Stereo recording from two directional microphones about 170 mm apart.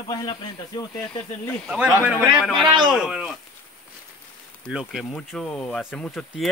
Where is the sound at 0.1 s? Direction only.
25° left (ahead or behind).